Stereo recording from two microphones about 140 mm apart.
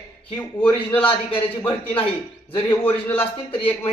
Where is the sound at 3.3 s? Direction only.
40° left (ahead or behind).